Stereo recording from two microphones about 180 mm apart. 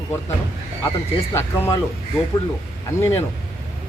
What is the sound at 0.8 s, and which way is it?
Speech, 15° left (ahead or behind).